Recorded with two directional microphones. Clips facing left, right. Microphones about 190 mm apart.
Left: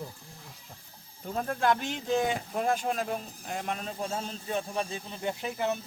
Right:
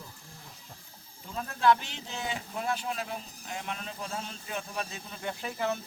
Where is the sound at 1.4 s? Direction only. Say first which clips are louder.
Right 1 dB; 50° left (ahead or behind).